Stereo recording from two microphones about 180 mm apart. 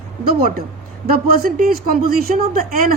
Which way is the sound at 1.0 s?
55° right (ahead or behind).